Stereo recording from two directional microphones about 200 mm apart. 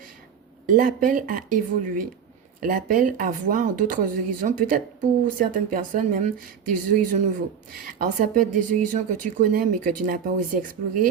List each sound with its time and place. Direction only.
0.7 s a woman's voice: 40° right (ahead or behind)